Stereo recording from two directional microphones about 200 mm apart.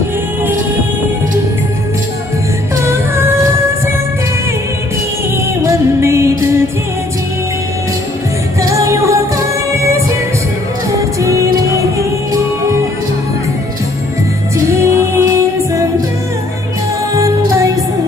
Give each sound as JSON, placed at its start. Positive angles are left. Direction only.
{"t": 2.7, "sound": "music", "side_deg": -15}
{"t": 5.7, "sound": "music", "side_deg": -15}
{"t": 8.5, "sound": "music", "side_deg": -15}
{"t": 10.9, "sound": "music", "side_deg": -15}
{"t": 14.8, "sound": "music", "side_deg": -10}
{"t": 17.1, "sound": "music", "side_deg": -15}